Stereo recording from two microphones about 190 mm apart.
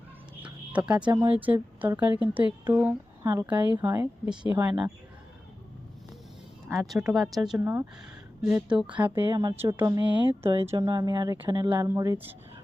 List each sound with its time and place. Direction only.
0.7 s speech: 5° right (ahead or behind)
6.7 s speech: centre (ahead or behind)
9.1 s speech: 25° right (ahead or behind)